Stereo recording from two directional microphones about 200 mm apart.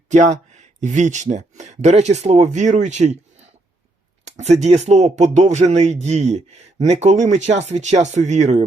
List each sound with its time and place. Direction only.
0.1 s speech: 35° right (ahead or behind)
4.3 s speech: 35° right (ahead or behind)